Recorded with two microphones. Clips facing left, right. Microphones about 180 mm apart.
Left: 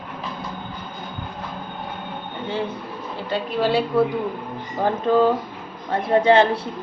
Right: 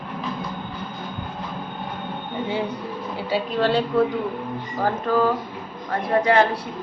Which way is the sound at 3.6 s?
10° left (ahead or behind).